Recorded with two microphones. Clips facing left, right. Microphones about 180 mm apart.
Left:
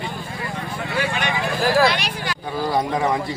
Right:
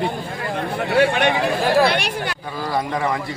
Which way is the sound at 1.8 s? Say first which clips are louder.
Right 2 dB; 60° right (ahead or behind).